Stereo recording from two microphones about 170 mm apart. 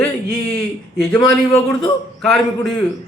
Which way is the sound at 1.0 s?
15° left (ahead or behind).